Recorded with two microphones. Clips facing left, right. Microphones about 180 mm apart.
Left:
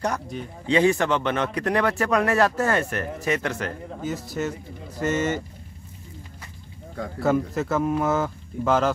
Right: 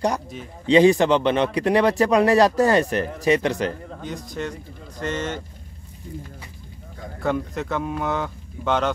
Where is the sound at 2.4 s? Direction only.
35° right (ahead or behind).